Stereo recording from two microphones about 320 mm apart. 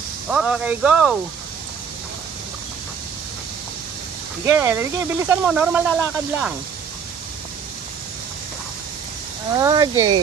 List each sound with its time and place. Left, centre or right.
0.3 s speech: centre
4.5 s speech: centre
9.6 s speech: centre